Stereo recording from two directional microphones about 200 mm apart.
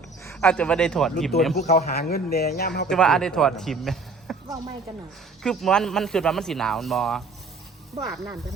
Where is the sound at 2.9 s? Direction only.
5° left (ahead or behind).